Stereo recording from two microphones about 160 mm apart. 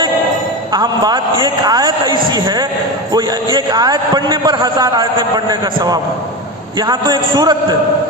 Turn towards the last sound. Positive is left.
turn(degrees=-25)  # may be behind; listen again after turning